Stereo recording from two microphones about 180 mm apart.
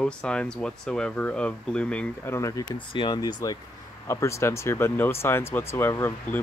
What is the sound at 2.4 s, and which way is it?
Speech, 20° left (ahead or behind).